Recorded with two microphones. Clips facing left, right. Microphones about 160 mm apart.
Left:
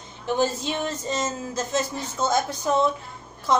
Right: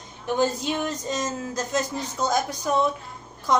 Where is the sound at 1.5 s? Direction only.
25° left (ahead or behind).